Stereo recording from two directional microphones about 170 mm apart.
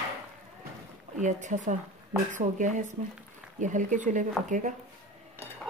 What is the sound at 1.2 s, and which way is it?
Speech, 45° right (ahead or behind).